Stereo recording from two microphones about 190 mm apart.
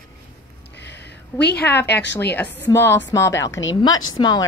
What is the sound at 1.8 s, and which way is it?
Speech, 65° left (ahead or behind).